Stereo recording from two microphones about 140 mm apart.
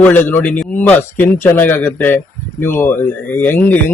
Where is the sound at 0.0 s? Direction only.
10° left (ahead or behind).